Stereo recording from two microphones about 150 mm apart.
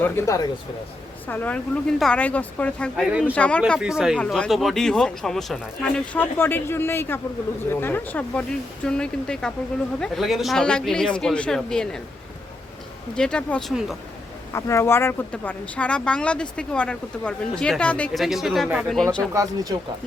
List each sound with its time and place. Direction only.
0.0 s speech: 20° left (ahead or behind)
3.1 s speech: 10° right (ahead or behind)
3.3 s speech: 10° left (ahead or behind)
3.8 s speech: 5° right (ahead or behind)
13.1 s speech: 5° left (ahead or behind)
14.5 s speech: 20° left (ahead or behind); by 18.9 s 5° right (ahead or behind)
19.3 s speech: 20° right (ahead or behind)